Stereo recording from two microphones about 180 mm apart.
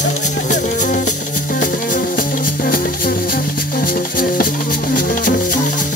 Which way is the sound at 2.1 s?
55° left (ahead or behind).